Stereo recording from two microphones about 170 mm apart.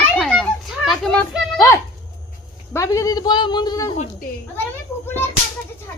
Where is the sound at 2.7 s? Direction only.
20° left (ahead or behind).